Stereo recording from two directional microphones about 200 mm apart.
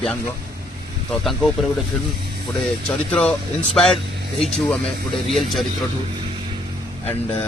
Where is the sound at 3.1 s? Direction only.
5° left (ahead or behind).